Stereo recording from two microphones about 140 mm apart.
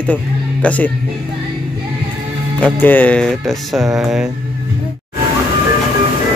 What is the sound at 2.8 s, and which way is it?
Speech, 10° left (ahead or behind).